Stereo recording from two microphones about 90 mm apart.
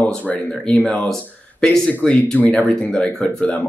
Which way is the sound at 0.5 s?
10° left (ahead or behind).